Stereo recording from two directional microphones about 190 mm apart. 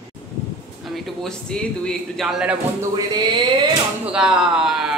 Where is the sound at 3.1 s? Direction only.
25° right (ahead or behind).